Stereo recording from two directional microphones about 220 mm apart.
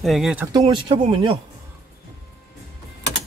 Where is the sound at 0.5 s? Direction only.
20° right (ahead or behind).